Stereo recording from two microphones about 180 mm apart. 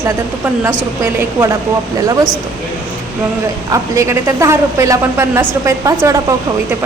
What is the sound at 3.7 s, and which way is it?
A man's voice, 15° right (ahead or behind).